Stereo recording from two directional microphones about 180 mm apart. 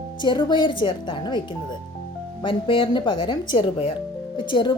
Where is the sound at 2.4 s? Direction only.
30° left (ahead or behind).